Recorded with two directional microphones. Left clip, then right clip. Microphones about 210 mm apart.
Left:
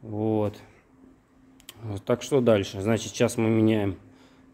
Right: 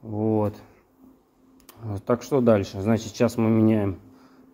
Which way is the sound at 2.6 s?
10° left (ahead or behind).